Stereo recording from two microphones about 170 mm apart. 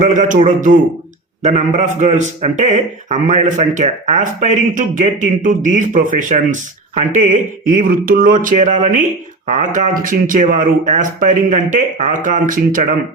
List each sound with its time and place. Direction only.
0.0 s a man's voice: 45° right (ahead or behind)